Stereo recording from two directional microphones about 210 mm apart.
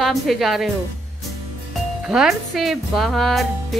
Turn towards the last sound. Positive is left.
turn(degrees=0)  # may be behind; listen again after turning